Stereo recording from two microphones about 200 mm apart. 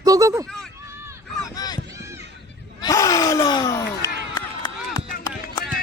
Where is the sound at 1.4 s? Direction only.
20° left (ahead or behind).